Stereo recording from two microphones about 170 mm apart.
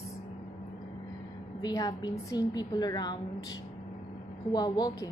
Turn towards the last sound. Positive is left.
turn(degrees=25)  # may be behind; listen again after turning